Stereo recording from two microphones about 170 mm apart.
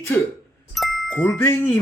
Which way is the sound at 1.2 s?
10° left (ahead or behind).